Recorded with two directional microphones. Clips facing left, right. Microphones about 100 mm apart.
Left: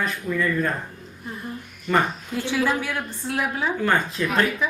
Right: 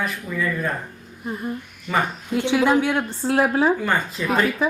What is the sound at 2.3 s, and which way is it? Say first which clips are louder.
A woman's voice: right 6 dB; 20° right (ahead or behind).